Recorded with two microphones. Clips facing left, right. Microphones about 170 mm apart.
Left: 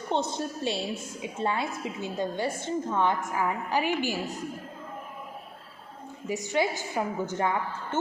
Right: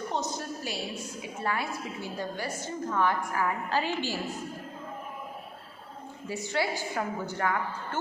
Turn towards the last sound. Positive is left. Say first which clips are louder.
# left 2 dB
turn(degrees=20)  # may be behind; listen again after turning